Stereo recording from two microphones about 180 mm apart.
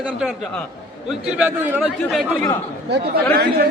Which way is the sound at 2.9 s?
65° right (ahead or behind).